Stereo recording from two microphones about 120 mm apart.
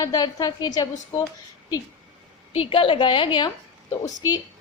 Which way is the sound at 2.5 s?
50° left (ahead or behind).